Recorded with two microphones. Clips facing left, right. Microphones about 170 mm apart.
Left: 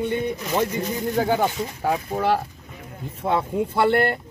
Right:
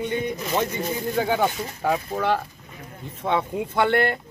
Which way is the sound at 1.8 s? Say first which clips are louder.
Left 1 dB; 10° left (ahead or behind).